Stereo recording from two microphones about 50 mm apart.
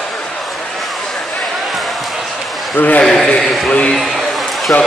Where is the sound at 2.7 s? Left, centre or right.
Left.